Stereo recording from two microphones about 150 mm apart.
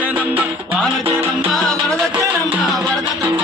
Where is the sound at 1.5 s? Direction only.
5° left (ahead or behind).